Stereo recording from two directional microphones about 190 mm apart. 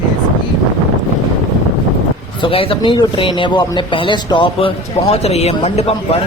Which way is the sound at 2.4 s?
30° left (ahead or behind).